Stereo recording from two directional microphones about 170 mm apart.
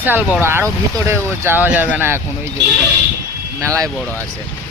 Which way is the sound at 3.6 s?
20° right (ahead or behind).